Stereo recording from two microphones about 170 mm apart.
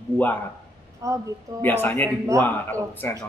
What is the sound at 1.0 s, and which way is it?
Speech, 20° right (ahead or behind).